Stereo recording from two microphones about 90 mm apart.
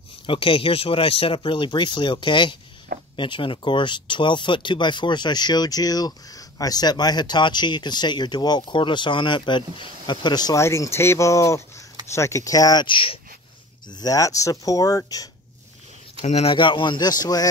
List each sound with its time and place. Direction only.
0.3 s speech: 90° left; by 10.6 s 50° left (ahead or behind)
10.6 s speech: 30° left (ahead or behind)
12.8 s speech: 75° left (ahead or behind)
13.8 s speech: 45° left (ahead or behind)
16.2 s speech: 70° left (ahead or behind); by 17.5 s 45° left (ahead or behind)